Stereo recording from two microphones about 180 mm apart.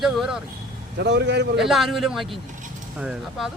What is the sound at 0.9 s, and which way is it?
Speech, 70° right (ahead or behind).